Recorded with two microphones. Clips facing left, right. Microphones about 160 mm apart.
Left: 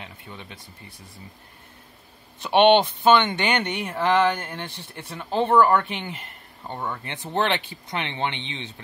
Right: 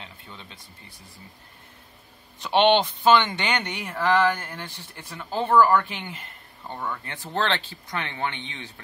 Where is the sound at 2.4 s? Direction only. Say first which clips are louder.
Left 3 dB; 20° left (ahead or behind).